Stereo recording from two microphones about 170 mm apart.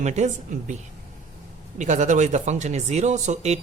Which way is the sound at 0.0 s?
45° right (ahead or behind).